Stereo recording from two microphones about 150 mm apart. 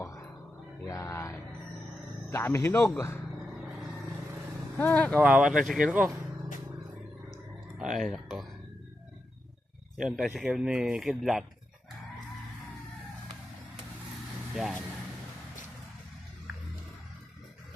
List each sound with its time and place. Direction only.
0.0 s a sound: 20° left (ahead or behind)
2.3 s speech: 15° left (ahead or behind)
4.8 s speech: 10° left (ahead or behind)
5.2 s speech: 5° right (ahead or behind)
7.8 s speech: centre (ahead or behind)
10.0 s speech: 5° right (ahead or behind)
14.5 s speech: 5° right (ahead or behind)